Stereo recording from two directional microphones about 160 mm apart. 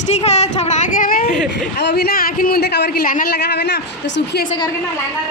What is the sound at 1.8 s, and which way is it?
A man's voice, 85° left.